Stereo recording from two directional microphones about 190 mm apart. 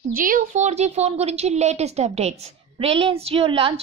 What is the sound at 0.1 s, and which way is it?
A woman's voice, 45° right (ahead or behind).